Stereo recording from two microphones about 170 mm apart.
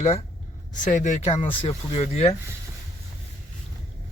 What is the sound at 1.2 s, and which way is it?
Speech, 35° left (ahead or behind).